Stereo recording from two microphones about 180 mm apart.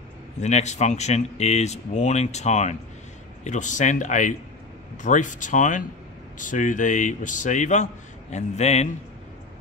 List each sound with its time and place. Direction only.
0.4 s a man's voice: 40° left (ahead or behind)